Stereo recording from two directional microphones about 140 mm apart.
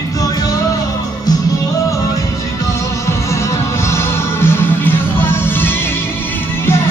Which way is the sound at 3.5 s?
20° left (ahead or behind).